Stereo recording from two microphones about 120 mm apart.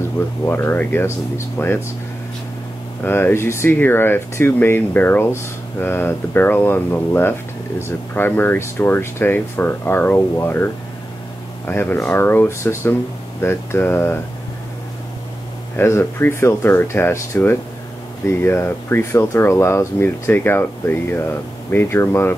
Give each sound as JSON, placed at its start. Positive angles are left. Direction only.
{"t": 0.5, "sound": "speech", "side_deg": 15}
{"t": 3.0, "sound": "speech", "side_deg": 15}
{"t": 15.7, "sound": "speech", "side_deg": 20}